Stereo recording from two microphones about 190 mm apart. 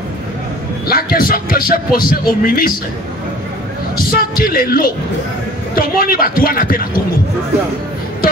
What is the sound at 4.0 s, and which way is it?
Speech, 50° left (ahead or behind).